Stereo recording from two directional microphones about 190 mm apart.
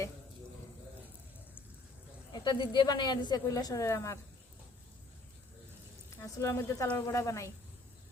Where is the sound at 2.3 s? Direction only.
25° left (ahead or behind).